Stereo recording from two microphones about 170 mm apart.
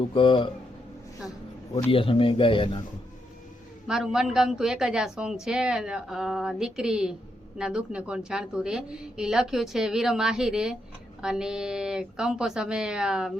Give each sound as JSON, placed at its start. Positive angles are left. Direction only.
{"t": 0.1, "sound": "speech", "side_deg": 30}
{"t": 1.9, "sound": "speech", "side_deg": 30}
{"t": 3.8, "sound": "a woman's voice", "side_deg": 0}